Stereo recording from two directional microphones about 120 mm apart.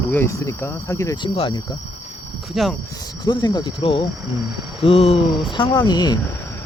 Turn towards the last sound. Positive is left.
turn(degrees=35)  # may be behind; listen again after turning